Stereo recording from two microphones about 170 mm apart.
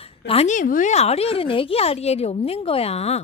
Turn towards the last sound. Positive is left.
turn(degrees=40)  # may be behind; listen again after turning